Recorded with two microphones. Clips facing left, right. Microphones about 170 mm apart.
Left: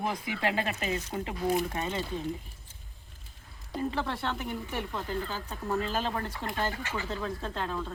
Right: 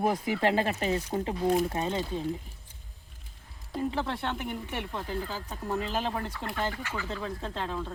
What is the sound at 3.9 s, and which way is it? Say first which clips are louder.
Speech: right 1 dB; 15° right (ahead or behind).